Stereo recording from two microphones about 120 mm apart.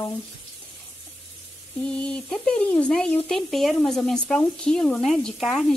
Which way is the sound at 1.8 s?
10° left (ahead or behind).